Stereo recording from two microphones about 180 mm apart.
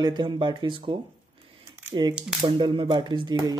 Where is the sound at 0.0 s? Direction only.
25° right (ahead or behind).